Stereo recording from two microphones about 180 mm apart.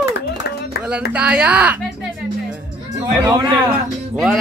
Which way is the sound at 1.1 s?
5° right (ahead or behind).